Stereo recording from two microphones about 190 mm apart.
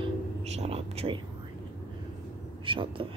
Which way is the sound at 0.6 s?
30° right (ahead or behind).